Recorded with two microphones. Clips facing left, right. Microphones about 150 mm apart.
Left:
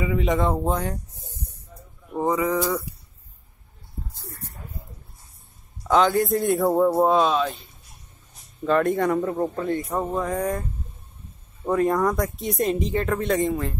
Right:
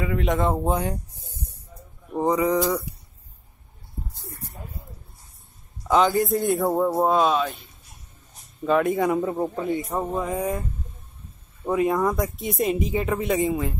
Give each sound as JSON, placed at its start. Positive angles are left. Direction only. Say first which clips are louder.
{"t": 0.0, "sound": "speech", "louder": "left 1 dB", "side_deg": 0}
{"t": 1.2, "sound": "a sound", "louder": "even", "side_deg": -10}
{"t": 2.2, "sound": "speech", "louder": "right 2 dB", "side_deg": -20}
{"t": 5.9, "sound": "speech", "louder": "even", "side_deg": 0}
{"t": 8.6, "sound": "speech", "louder": "even", "side_deg": -5}
{"t": 11.6, "sound": "speech", "louder": "left 1 dB", "side_deg": -5}